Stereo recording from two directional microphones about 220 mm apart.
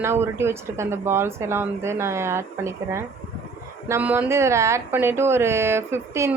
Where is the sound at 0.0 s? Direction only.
10° right (ahead or behind).